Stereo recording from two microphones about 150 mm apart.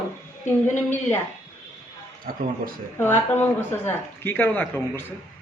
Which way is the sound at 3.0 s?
15° left (ahead or behind).